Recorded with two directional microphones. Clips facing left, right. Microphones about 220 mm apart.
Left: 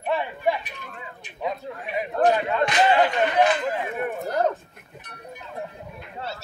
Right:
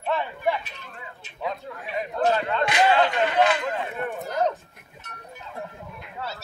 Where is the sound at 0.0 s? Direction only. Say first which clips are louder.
Left 1 dB; 15° left (ahead or behind).